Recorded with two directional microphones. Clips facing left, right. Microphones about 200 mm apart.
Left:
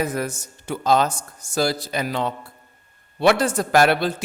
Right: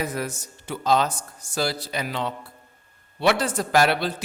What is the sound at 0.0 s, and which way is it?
A man's voice, 45° left (ahead or behind).